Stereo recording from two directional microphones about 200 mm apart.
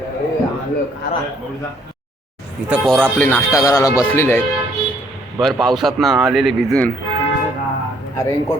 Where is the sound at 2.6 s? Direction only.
5° right (ahead or behind).